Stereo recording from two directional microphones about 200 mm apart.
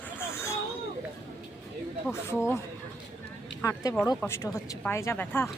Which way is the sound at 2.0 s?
10° left (ahead or behind).